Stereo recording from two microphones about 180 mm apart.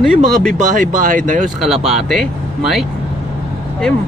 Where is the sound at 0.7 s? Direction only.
45° right (ahead or behind).